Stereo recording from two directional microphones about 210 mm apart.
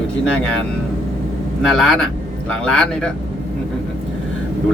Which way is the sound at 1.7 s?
Centre (ahead or behind).